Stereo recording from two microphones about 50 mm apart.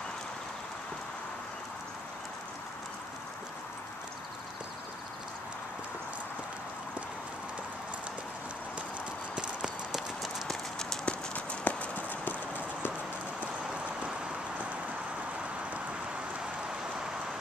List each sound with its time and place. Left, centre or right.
9.3 s clip-clop: centre
10.5 s clip-clop: centre
11.1 s clip-clop: left